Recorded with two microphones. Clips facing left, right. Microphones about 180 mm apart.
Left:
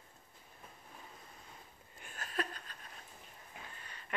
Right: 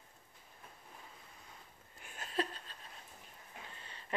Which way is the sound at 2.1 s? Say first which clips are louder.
Right 2 dB; 25° right (ahead or behind).